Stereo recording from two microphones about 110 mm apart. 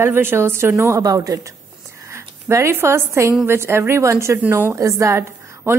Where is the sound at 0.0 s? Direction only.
20° right (ahead or behind).